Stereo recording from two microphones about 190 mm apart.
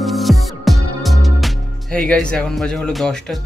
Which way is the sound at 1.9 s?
5° left (ahead or behind).